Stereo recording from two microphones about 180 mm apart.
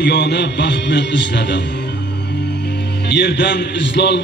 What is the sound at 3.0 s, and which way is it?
A man's voice, 75° left (ahead or behind).